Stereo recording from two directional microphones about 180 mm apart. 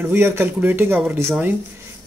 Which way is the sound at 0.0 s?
10° right (ahead or behind).